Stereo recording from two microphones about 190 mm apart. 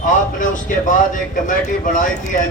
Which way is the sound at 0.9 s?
45° left (ahead or behind).